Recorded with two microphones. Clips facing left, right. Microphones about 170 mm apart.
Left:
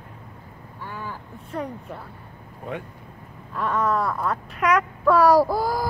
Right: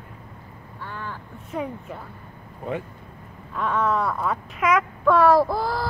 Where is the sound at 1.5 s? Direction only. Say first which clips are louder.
Right 1 dB; 5° right (ahead or behind).